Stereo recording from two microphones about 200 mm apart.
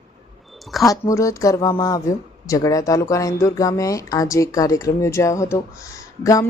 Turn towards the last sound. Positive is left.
turn(degrees=15)  # may be behind; listen again after turning